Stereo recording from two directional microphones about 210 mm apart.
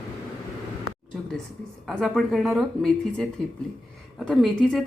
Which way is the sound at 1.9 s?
Centre (ahead or behind).